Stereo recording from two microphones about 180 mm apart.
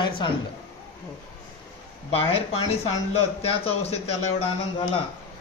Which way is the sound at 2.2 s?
35° left (ahead or behind).